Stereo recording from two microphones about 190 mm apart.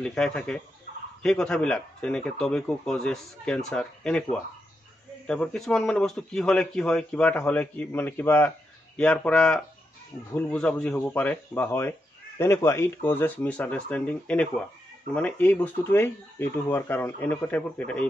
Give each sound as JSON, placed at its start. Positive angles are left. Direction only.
{"t": 0.0, "sound": "speech", "side_deg": 5}